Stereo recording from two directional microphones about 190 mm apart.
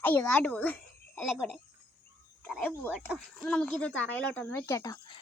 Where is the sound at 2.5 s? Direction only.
Centre (ahead or behind).